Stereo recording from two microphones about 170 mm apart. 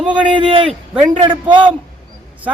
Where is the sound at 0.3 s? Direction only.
30° right (ahead or behind).